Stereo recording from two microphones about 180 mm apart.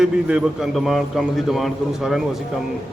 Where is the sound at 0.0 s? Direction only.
5° right (ahead or behind).